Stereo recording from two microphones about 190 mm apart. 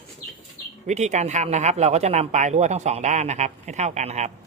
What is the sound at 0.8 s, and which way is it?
Speech, 35° right (ahead or behind).